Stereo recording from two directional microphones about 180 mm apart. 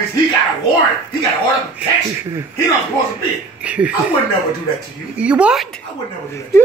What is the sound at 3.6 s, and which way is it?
Speech, 5° right (ahead or behind).